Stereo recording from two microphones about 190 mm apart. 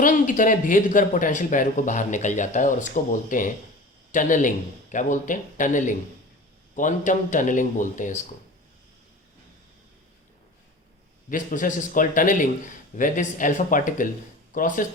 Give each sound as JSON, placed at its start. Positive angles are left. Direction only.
{"t": 0.0, "sound": "speech", "side_deg": 45}
{"t": 11.3, "sound": "speech", "side_deg": 45}